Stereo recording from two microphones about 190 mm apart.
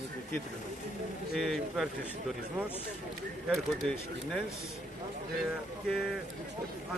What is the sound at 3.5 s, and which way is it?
Speech, 5° left (ahead or behind).